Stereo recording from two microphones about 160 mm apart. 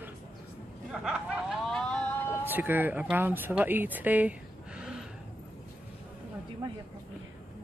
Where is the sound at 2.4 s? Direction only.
10° right (ahead or behind).